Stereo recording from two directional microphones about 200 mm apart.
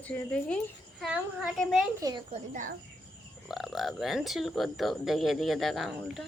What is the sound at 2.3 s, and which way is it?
Speech, 40° right (ahead or behind).